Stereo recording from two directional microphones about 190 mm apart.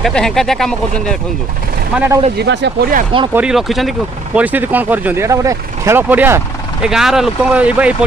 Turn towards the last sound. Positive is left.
turn(degrees=-5)  # may be behind; listen again after turning